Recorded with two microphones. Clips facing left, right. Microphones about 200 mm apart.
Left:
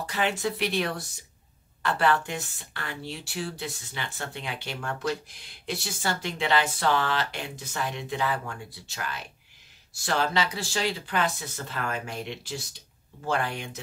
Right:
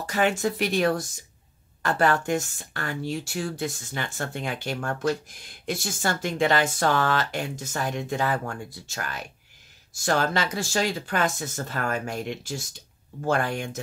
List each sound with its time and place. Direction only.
0.0 s speech: 45° right (ahead or behind)